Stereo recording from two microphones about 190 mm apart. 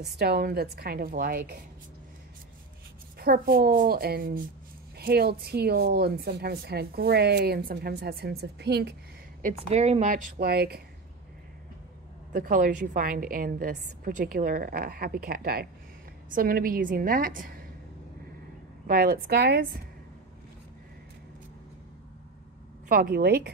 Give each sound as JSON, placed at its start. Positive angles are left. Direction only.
{"t": 0.2, "sound": "a woman's voice", "side_deg": -55}
{"t": 3.2, "sound": "a woman's voice", "side_deg": -50}
{"t": 9.4, "sound": "a woman's voice", "side_deg": -40}
{"t": 12.3, "sound": "a woman's voice", "side_deg": -45}
{"t": 18.9, "sound": "a woman's voice", "side_deg": -50}
{"t": 22.8, "sound": "a woman's voice", "side_deg": -50}